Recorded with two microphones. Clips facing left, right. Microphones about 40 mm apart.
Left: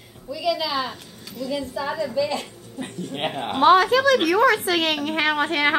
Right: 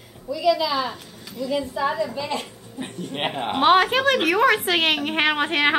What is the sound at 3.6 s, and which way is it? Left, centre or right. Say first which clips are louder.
A woman's voice: left 2 dB; right.